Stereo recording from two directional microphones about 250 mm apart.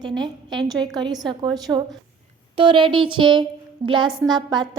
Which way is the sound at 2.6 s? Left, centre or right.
Centre.